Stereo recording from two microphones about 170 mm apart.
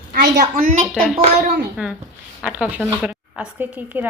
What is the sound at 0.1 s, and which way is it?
Speech, 55° right (ahead or behind).